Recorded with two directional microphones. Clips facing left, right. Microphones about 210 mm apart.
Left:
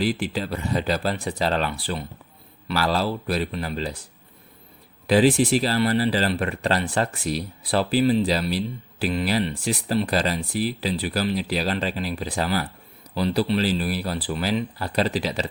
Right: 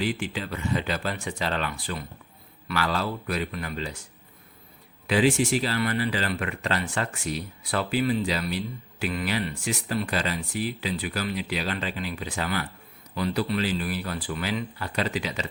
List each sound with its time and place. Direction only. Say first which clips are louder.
0.0 s speech: left 4 dB; 35° left (ahead or behind)
5.0 s speech: left 4 dB; 35° left (ahead or behind)